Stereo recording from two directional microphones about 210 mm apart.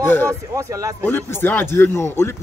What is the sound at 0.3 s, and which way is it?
Speech, 15° right (ahead or behind).